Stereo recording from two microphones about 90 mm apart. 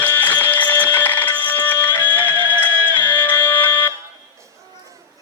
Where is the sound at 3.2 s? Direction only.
20° left (ahead or behind).